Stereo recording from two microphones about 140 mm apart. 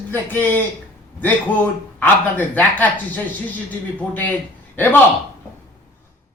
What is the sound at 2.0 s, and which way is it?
Speech, 10° left (ahead or behind).